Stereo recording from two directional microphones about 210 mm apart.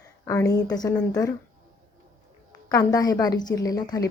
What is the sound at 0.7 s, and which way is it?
Speech, 20° left (ahead or behind).